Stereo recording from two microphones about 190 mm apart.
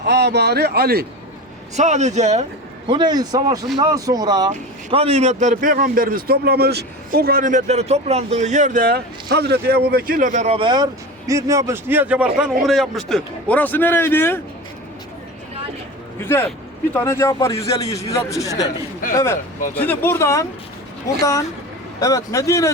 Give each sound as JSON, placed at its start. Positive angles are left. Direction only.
{"t": 0.0, "sound": "speech", "side_deg": -60}
{"t": 1.7, "sound": "a man's voice", "side_deg": -40}
{"t": 16.2, "sound": "a man's voice", "side_deg": 10}
{"t": 22.0, "sound": "a man's voice", "side_deg": 20}